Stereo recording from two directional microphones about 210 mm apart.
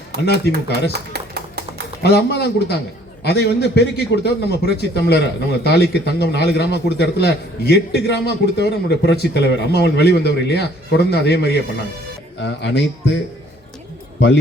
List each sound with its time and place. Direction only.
0.3 s a man's voice: 50° left (ahead or behind)
0.9 s a sound: 50° right (ahead or behind)
2.0 s a man's voice: 50° left (ahead or behind)